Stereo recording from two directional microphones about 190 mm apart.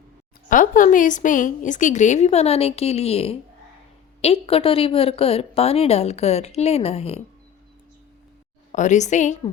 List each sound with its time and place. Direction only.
0.4 s a woman's voice: 45° left (ahead or behind)
8.7 s a woman's voice: 40° left (ahead or behind)